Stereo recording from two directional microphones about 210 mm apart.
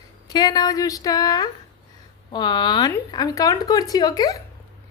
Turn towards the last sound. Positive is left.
turn(degrees=20)  # may be behind; listen again after turning